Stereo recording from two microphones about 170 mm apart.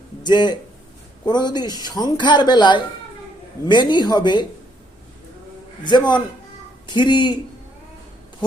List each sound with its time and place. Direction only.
0.2 s speech: 25° left (ahead or behind)
5.8 s speech: 25° left (ahead or behind)